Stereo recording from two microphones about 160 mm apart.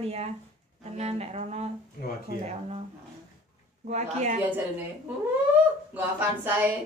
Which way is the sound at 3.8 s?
45° right (ahead or behind).